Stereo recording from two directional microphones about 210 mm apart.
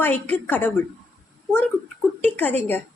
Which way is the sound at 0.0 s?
10° left (ahead or behind).